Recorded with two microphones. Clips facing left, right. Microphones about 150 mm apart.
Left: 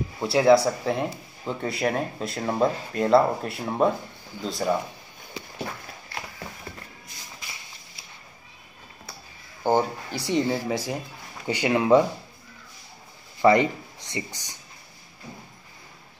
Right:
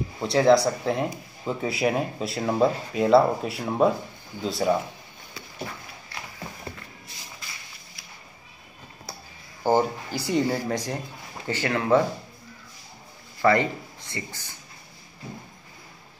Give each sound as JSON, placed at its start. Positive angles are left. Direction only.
{"t": 0.2, "sound": "speech", "side_deg": 5}
{"t": 9.6, "sound": "speech", "side_deg": -10}
{"t": 11.4, "sound": "speech", "side_deg": 15}
{"t": 13.4, "sound": "speech", "side_deg": 20}